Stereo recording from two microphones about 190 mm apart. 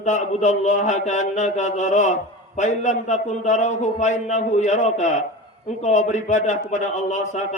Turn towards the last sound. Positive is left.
turn(degrees=40)  # may be behind; listen again after turning